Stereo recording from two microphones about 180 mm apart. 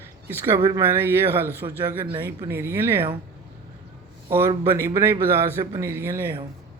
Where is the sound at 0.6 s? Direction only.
25° right (ahead or behind).